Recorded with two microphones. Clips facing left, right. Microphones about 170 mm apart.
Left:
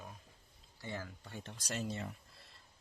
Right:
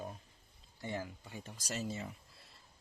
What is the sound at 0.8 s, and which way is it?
Speech, 15° right (ahead or behind).